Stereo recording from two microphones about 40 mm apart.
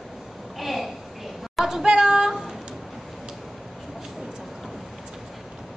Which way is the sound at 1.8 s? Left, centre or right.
Centre.